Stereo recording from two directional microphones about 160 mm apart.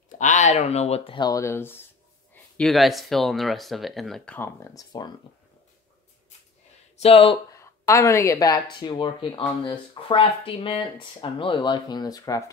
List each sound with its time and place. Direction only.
0.1 s speech: 50° left (ahead or behind); by 1.8 s 15° left (ahead or behind)
2.5 s speech: 5° left (ahead or behind)
4.4 s speech: 15° left (ahead or behind)
7.0 s speech: 35° left (ahead or behind)
7.5 s speech: 20° left (ahead or behind)